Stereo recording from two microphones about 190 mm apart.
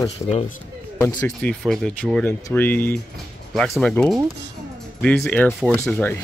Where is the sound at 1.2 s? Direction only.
5° left (ahead or behind).